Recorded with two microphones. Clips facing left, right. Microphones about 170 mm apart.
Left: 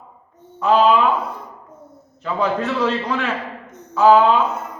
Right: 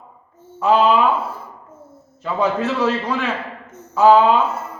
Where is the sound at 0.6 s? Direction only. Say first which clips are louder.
Even; 5° right (ahead or behind).